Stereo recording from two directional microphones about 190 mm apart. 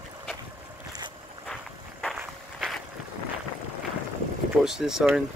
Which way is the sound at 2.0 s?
Centre (ahead or behind).